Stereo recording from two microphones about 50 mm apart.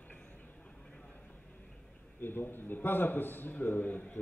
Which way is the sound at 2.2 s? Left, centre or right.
Left.